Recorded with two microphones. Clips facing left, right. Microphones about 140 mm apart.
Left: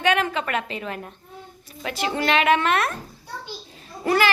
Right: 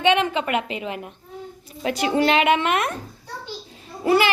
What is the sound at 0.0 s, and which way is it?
A woman's voice, 20° right (ahead or behind).